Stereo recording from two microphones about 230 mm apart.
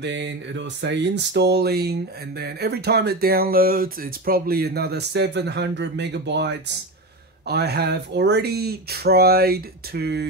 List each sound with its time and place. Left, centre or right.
0.0 s speech: right